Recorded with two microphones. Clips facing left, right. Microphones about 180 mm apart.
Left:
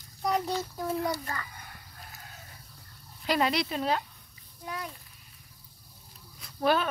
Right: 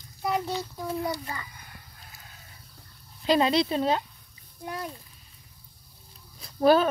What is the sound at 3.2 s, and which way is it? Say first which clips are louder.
Speech: right 5 dB; 25° right (ahead or behind).